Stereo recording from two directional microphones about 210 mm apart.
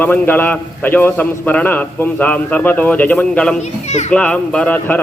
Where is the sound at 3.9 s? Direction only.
35° left (ahead or behind).